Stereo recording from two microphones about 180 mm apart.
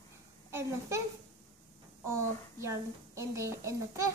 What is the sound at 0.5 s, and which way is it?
Speech, 15° right (ahead or behind).